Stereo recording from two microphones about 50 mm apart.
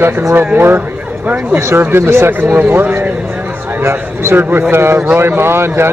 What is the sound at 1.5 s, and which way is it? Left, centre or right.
Speech, right.